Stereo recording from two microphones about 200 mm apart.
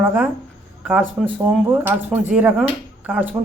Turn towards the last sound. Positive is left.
turn(degrees=-10)  # may be behind; listen again after turning